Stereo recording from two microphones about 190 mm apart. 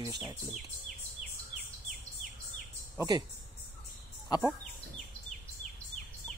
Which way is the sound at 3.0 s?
20° right (ahead or behind).